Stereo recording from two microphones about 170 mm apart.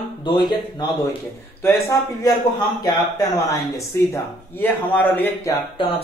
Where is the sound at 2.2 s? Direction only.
25° left (ahead or behind).